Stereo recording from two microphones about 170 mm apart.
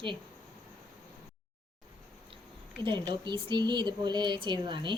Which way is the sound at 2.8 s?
25° right (ahead or behind).